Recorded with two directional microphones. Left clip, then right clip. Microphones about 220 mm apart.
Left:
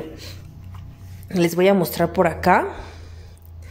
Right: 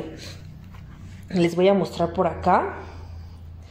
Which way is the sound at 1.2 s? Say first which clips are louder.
Left 2 dB; 10° left (ahead or behind).